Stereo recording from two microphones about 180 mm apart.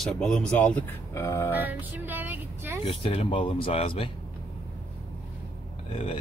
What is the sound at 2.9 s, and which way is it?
Speech, 30° left (ahead or behind).